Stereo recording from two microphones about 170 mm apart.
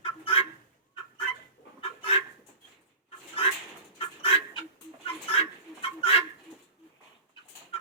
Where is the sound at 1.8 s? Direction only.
35° left (ahead or behind).